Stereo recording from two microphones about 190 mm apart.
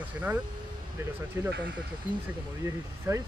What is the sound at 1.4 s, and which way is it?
Speech, 10° right (ahead or behind).